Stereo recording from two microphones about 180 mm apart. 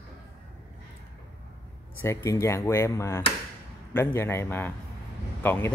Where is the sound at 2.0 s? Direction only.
15° left (ahead or behind).